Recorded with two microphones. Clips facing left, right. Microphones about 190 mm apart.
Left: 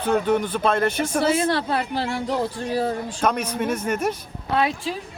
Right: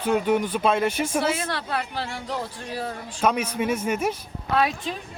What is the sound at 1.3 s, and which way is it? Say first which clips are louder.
Speech: left 7 dB; 30° left (ahead or behind).